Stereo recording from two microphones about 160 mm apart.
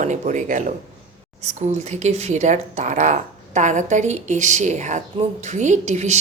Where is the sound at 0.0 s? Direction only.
50° right (ahead or behind).